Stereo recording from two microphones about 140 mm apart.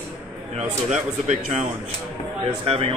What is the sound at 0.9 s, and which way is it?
Speech, 55° right (ahead or behind).